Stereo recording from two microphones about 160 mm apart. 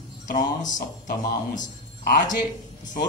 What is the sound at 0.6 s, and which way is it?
A woman's voice, 50° left (ahead or behind).